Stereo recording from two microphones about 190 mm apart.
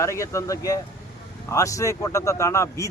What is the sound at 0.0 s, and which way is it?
A man's voice, 15° left (ahead or behind).